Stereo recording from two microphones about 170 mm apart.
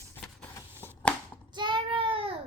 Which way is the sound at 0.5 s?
10° left (ahead or behind).